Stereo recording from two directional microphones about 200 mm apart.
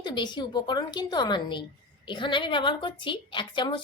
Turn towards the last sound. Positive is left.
turn(degrees=25)  # may be behind; listen again after turning